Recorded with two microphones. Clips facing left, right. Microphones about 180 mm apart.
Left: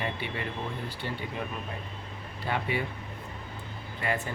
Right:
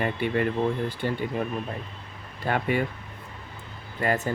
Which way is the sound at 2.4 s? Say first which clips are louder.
Right 5 dB; 50° right (ahead or behind).